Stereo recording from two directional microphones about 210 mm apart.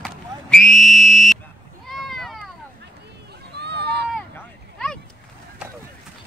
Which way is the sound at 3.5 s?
50° right (ahead or behind).